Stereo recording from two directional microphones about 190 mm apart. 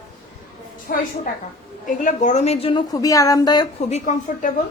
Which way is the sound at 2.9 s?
20° left (ahead or behind).